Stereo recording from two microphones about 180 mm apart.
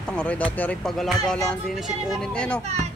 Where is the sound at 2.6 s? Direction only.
40° right (ahead or behind).